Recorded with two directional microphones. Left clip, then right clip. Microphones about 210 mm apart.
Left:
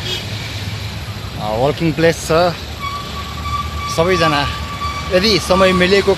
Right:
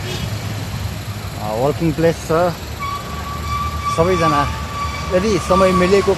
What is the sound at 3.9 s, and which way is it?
Speech, 20° left (ahead or behind).